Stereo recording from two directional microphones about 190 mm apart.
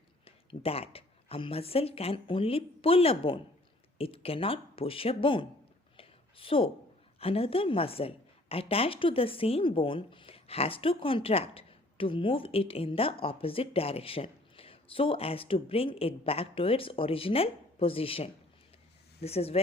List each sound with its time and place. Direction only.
0.3 s a woman's voice: 30° left (ahead or behind)
6.0 s a sound: 30° left (ahead or behind)
7.2 s a woman's voice: 30° left (ahead or behind)